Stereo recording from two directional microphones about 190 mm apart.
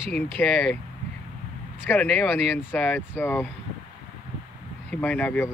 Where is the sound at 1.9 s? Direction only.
10° left (ahead or behind).